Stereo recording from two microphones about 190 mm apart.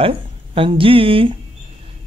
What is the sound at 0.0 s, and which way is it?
Speech, 25° right (ahead or behind).